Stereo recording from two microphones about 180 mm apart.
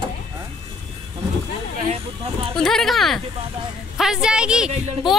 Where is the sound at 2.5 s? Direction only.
Centre (ahead or behind).